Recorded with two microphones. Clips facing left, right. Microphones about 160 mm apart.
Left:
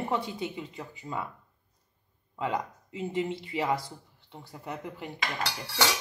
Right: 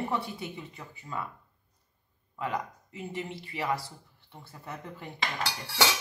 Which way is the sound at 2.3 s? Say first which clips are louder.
Left 2 dB; 20° left (ahead or behind).